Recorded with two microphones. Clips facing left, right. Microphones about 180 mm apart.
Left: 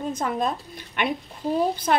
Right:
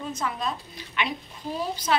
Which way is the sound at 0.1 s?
50° left (ahead or behind).